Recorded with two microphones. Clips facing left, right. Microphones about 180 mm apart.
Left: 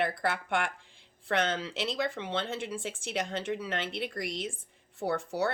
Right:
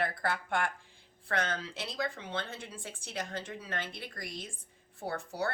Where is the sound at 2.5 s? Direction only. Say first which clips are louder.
Left 9 dB; 85° left.